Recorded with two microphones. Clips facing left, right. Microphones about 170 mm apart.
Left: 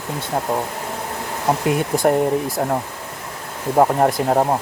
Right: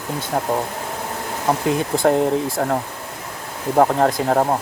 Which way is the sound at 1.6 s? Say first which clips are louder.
Even; 15° left (ahead or behind).